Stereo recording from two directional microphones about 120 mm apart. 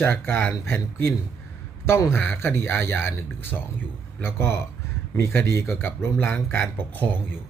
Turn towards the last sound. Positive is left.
turn(degrees=15)  # may be behind; listen again after turning